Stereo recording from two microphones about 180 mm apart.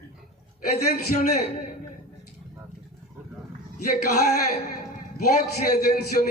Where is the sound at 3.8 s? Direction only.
50° left (ahead or behind).